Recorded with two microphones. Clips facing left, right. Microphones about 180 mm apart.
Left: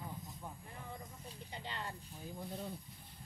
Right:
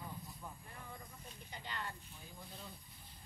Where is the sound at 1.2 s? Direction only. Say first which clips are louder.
Left 3 dB; 25° left (ahead or behind).